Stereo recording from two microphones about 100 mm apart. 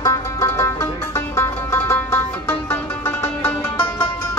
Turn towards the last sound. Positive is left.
turn(degrees=25)  # may be behind; listen again after turning